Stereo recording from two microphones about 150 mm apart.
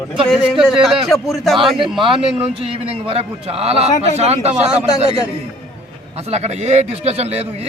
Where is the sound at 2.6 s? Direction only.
40° right (ahead or behind).